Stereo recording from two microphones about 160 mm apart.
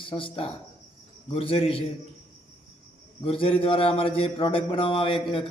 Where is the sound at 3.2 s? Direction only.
35° left (ahead or behind).